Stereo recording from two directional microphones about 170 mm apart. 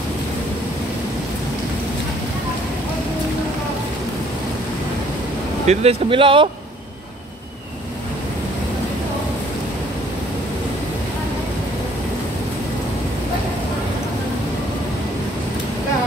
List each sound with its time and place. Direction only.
5.7 s speech: 35° right (ahead or behind)